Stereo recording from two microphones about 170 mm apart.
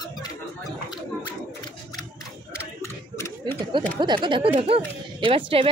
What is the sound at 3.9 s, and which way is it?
Speech, 30° right (ahead or behind).